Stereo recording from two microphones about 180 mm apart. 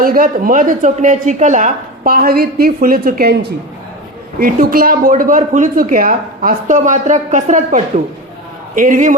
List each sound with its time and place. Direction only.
0.0 s a woman's voice: 50° right (ahead or behind)
4.4 s a woman's voice: 50° right (ahead or behind)